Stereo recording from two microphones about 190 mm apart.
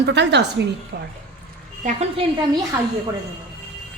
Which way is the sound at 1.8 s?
35° right (ahead or behind).